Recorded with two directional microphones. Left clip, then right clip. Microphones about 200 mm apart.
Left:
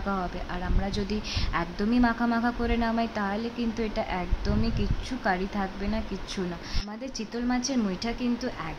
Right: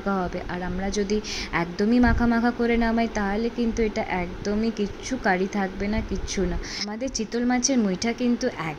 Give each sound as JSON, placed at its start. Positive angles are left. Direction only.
{"t": 0.8, "sound": "a woman's voice", "side_deg": -15}